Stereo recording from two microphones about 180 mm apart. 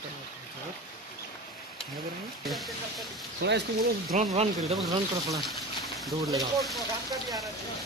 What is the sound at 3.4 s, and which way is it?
Speech, 70° right (ahead or behind).